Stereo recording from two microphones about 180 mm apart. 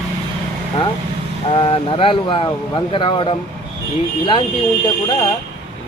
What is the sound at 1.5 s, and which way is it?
Speech, 30° left (ahead or behind).